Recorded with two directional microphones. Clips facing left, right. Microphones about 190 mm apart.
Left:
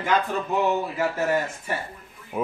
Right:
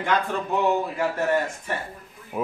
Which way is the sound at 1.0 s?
5° left (ahead or behind).